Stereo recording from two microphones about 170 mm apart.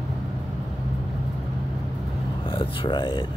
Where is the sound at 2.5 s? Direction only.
30° left (ahead or behind).